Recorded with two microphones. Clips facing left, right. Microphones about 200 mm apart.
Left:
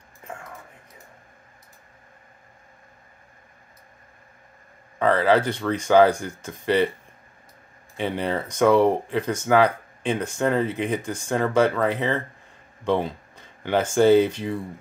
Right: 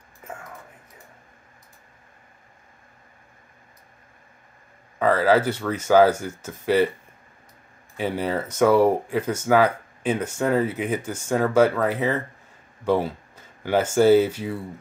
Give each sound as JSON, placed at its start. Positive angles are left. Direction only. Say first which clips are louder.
{"t": 4.9, "sound": "speech", "louder": "even", "side_deg": -5}
{"t": 8.0, "sound": "speech", "louder": "right 1 dB", "side_deg": -5}